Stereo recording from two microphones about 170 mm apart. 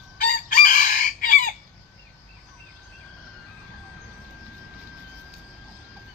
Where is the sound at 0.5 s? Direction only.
55° left (ahead or behind).